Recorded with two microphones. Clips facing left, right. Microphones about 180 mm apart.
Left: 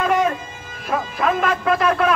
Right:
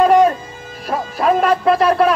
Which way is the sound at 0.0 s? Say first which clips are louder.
Right 7 dB; 35° right (ahead or behind).